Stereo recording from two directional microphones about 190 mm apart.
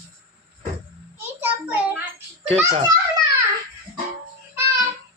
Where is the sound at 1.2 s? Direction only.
10° right (ahead or behind).